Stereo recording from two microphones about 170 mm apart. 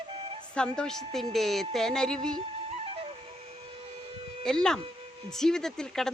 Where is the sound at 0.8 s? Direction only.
5° left (ahead or behind).